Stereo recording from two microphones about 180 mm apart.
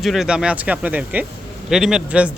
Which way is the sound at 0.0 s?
Centre (ahead or behind).